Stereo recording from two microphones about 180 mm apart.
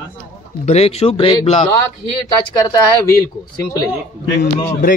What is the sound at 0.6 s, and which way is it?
Speech, 35° left (ahead or behind).